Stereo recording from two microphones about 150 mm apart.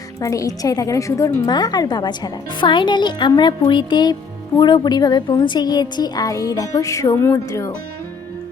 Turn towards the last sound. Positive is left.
turn(degrees=20)  # may be behind; listen again after turning